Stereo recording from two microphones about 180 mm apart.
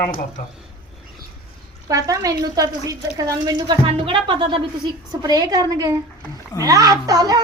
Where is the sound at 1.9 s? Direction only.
20° right (ahead or behind).